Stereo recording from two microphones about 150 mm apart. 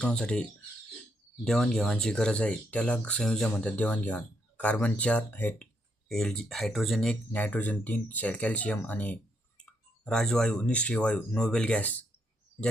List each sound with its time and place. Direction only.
0.0 s speech: 5° left (ahead or behind)
1.5 s speech: 5° left (ahead or behind)